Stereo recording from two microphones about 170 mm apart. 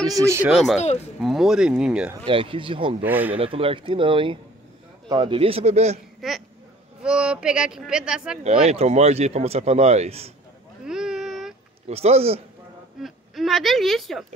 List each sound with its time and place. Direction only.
0.0 s speech: 20° right (ahead or behind)
0.5 s speech: centre (ahead or behind)
2.2 s speech: 30° right (ahead or behind)
3.0 s speech: 10° right (ahead or behind)
3.3 s speech: 35° right (ahead or behind)
6.2 s speech: centre (ahead or behind)
8.5 s speech: 35° right (ahead or behind)
10.9 s a sound: 5° right (ahead or behind)
11.9 s speech: 35° right (ahead or behind)
13.0 s speech: centre (ahead or behind)